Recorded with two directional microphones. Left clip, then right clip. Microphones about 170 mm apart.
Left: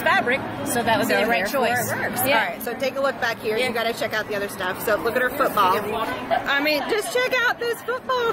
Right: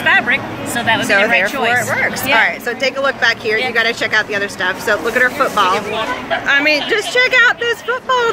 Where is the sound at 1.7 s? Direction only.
5° right (ahead or behind).